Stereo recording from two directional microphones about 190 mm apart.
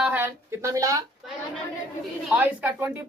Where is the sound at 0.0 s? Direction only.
10° right (ahead or behind).